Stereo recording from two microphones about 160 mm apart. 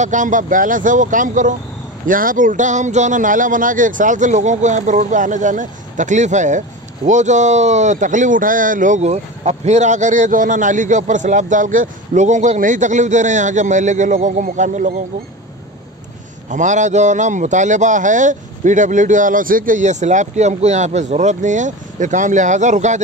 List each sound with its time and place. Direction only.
0.0 s a man's voice: 50° right (ahead or behind)
16.4 s a man's voice: 50° right (ahead or behind)